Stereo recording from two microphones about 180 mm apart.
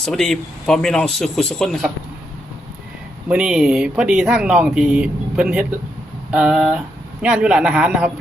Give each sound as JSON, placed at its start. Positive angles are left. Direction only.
{"t": 0.0, "sound": "speech", "side_deg": 0}
{"t": 3.2, "sound": "speech", "side_deg": -5}